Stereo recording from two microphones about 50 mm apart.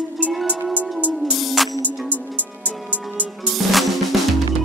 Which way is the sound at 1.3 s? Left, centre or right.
Centre.